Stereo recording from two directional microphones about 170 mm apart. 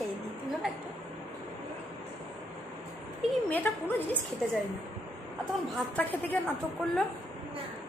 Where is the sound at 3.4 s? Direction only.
10° left (ahead or behind).